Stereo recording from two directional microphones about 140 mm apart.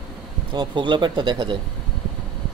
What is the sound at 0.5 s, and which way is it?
Speech, 35° right (ahead or behind).